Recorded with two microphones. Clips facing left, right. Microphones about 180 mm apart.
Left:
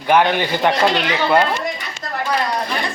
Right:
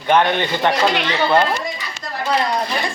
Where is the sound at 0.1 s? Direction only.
10° left (ahead or behind).